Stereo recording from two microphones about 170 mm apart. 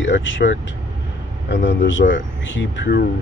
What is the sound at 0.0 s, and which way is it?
Speech, 90° left.